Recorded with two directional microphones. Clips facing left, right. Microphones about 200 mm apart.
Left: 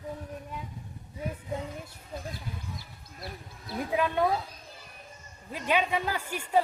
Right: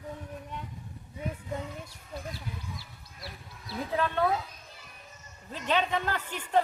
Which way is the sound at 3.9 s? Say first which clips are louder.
Left 1 dB; 15° left (ahead or behind).